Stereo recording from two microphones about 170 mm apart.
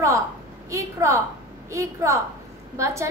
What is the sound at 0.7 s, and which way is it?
A woman's voice, 15° right (ahead or behind).